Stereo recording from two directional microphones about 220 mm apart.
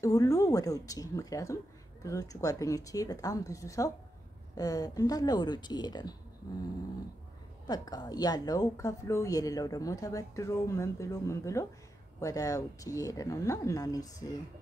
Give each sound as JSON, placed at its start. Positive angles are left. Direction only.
{"t": 0.0, "sound": "a woman's voice", "side_deg": 15}
{"t": 7.6, "sound": "a woman's voice", "side_deg": 15}